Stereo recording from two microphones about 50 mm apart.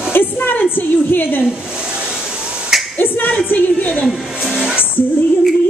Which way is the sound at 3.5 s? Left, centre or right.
Left.